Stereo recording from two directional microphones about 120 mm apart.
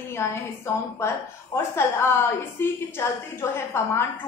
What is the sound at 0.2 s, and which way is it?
A woman's voice, 20° left (ahead or behind).